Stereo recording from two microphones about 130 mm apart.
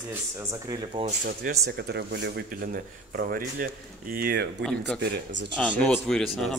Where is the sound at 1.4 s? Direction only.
90° right.